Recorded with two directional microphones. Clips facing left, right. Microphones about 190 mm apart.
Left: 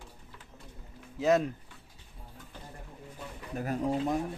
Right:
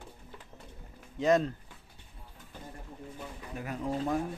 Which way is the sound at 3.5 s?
40° left (ahead or behind).